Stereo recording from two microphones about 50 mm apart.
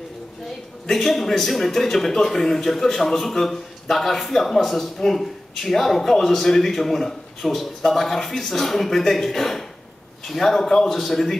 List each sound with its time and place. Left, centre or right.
0.8 s a man's voice: centre